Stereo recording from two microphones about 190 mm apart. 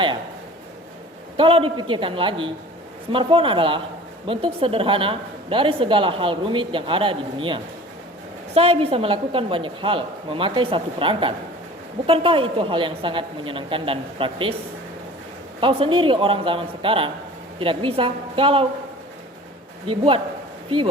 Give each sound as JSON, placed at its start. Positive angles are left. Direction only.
{"t": 1.4, "sound": "a woman's voice", "side_deg": -30}
{"t": 15.6, "sound": "a woman's voice", "side_deg": -25}
{"t": 19.9, "sound": "a woman's voice", "side_deg": -25}